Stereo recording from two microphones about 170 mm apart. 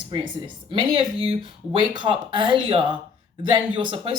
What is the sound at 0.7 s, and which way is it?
Speech, 30° right (ahead or behind).